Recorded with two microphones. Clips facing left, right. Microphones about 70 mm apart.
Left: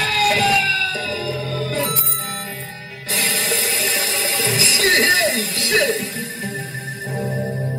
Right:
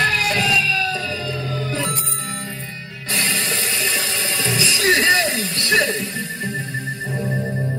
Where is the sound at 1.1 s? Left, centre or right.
Right.